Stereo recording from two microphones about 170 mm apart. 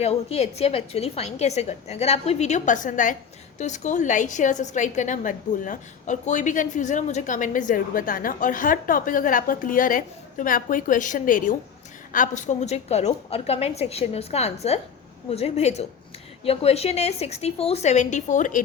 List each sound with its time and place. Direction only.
0.0 s a woman's voice: 40° left (ahead or behind)